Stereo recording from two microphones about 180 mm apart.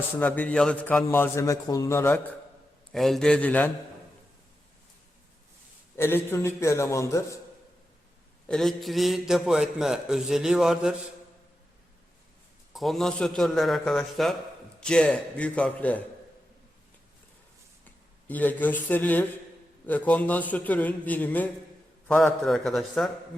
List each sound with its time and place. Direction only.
0.2 s a man's voice: 10° left (ahead or behind)
2.9 s a man's voice: centre (ahead or behind)
6.0 s a man's voice: 15° left (ahead or behind)
8.4 s a man's voice: centre (ahead or behind)
12.7 s a man's voice: centre (ahead or behind)
17.8 s a man's voice: 10° left (ahead or behind)